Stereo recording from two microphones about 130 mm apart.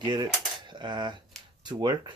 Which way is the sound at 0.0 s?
35° right (ahead or behind).